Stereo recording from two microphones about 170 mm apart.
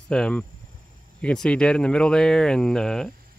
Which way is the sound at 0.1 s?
5° left (ahead or behind).